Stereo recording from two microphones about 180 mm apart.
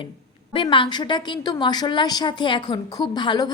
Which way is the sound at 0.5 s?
30° left (ahead or behind).